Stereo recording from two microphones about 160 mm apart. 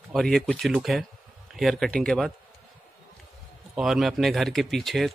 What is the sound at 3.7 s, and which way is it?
A man's voice, 5° right (ahead or behind).